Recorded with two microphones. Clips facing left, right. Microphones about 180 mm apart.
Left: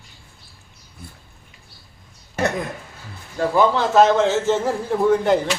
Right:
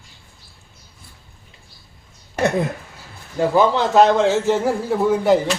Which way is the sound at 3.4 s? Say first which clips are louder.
Right 1 dB; 20° right (ahead or behind).